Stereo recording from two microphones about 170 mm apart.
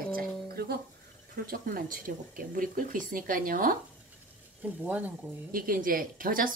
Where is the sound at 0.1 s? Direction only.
60° right (ahead or behind).